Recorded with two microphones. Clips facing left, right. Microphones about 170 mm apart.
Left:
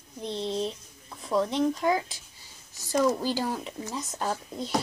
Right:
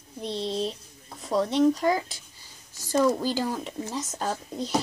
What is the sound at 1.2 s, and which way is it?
Speech, 40° right (ahead or behind).